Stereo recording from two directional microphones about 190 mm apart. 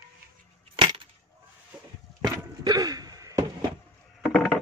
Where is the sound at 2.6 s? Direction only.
20° right (ahead or behind).